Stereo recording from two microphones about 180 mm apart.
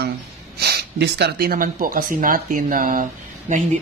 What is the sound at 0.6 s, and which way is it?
Speech, 65° right (ahead or behind).